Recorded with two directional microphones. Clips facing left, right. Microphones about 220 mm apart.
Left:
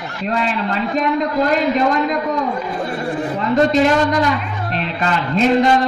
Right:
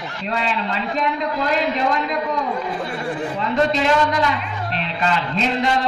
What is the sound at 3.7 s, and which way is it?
A man's voice, 45° left (ahead or behind).